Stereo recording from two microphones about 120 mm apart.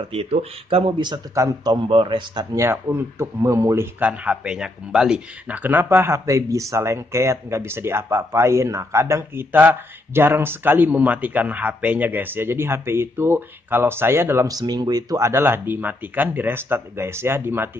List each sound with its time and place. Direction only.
0.1 s a man's voice: 55° right (ahead or behind)
2.5 s speech: 20° right (ahead or behind)
4.1 s speech: 10° right (ahead or behind)